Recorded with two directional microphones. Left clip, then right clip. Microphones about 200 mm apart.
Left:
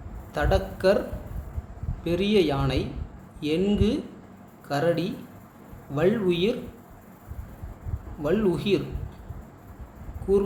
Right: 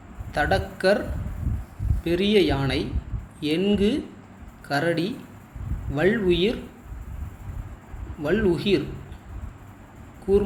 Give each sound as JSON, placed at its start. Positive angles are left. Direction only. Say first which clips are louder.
{"t": 0.3, "sound": "speech", "louder": "right 2 dB", "side_deg": 0}
{"t": 2.0, "sound": "speech", "louder": "right 2 dB", "side_deg": 0}
{"t": 8.2, "sound": "speech", "louder": "right 2 dB", "side_deg": 0}